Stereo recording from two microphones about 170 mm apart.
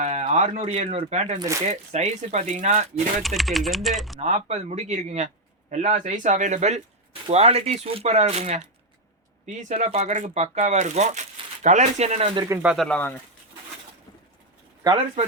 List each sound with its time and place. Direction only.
0.0 s speech: 40° right (ahead or behind)
3.2 s speech: centre (ahead or behind)
4.2 s speech: 40° right (ahead or behind)
9.6 s speech: 45° right (ahead or behind)
12.6 s speech: centre (ahead or behind)
14.8 s speech: 25° right (ahead or behind)